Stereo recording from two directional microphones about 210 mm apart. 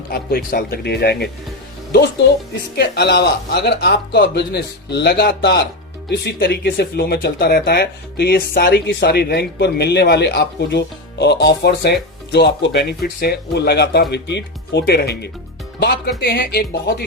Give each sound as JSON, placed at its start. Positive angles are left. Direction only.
{"t": 0.1, "sound": "speech", "side_deg": 45}